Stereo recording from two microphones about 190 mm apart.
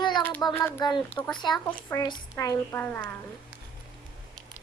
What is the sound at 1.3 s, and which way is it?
Speech, 25° left (ahead or behind).